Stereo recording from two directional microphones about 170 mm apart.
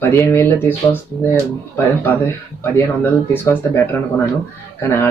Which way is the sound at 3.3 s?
10° left (ahead or behind).